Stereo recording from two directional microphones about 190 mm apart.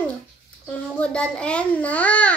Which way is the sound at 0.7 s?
5° left (ahead or behind).